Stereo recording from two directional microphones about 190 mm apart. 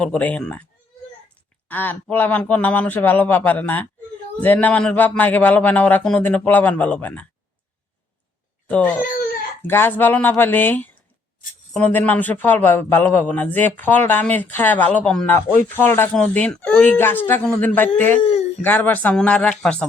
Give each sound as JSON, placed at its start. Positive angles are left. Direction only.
{"t": 0.0, "sound": "a man's voice", "side_deg": 5}
{"t": 8.6, "sound": "a man's voice", "side_deg": 10}
{"t": 18.2, "sound": "speech", "side_deg": 30}
{"t": 18.6, "sound": "a man's voice", "side_deg": 10}